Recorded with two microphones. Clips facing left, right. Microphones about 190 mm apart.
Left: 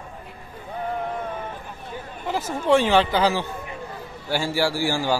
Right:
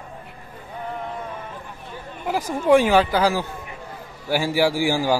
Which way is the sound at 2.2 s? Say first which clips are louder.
Right 3 dB; 15° right (ahead or behind).